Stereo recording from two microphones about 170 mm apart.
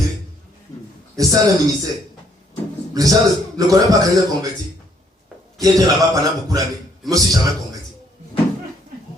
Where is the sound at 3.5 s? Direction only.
20° right (ahead or behind).